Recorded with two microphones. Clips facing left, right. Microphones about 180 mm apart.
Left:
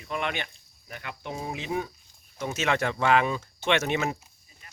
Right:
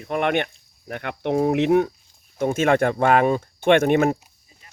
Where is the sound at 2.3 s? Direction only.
50° right (ahead or behind).